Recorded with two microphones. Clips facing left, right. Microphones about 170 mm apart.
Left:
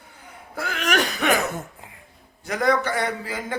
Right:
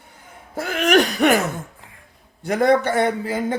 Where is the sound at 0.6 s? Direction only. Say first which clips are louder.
Right 7 dB; 50° right (ahead or behind).